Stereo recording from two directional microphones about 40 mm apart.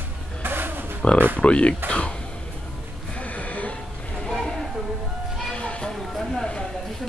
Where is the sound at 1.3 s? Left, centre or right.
Left.